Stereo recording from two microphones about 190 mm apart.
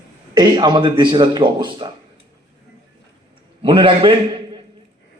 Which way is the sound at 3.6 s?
25° right (ahead or behind).